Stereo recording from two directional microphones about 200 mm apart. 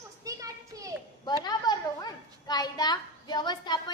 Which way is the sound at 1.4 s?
20° left (ahead or behind).